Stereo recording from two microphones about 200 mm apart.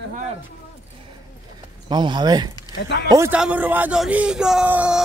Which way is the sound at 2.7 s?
60° left (ahead or behind).